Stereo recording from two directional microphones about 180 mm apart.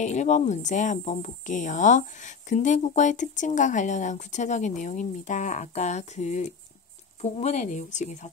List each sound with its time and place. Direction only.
0.0 s speech: 40° left (ahead or behind)